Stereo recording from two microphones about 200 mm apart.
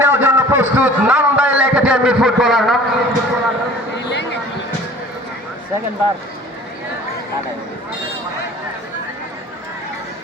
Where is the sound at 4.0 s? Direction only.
60° left (ahead or behind).